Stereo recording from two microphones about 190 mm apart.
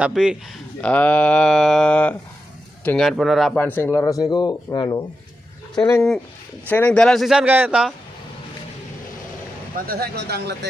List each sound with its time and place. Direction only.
0.0 s speech: 5° right (ahead or behind)
0.7 s speech: 5° left (ahead or behind)
5.9 s speech: 5° left (ahead or behind)
9.8 s speech: 55° right (ahead or behind)